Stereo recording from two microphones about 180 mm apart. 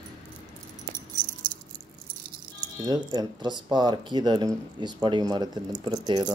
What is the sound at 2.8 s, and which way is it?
Speech, 20° right (ahead or behind).